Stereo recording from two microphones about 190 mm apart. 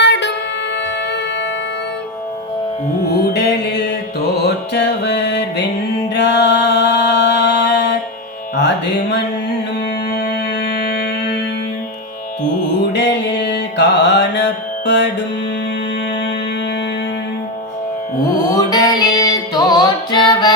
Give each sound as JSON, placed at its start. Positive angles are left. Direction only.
{"t": 0.0, "sound": "music", "side_deg": 65}
{"t": 3.1, "sound": "mantra", "side_deg": 60}
{"t": 4.4, "sound": "music", "side_deg": 60}
{"t": 6.1, "sound": "mantra", "side_deg": 65}
{"t": 8.5, "sound": "music", "side_deg": 65}
{"t": 12.9, "sound": "music", "side_deg": 65}
{"t": 18.5, "sound": "music", "side_deg": 20}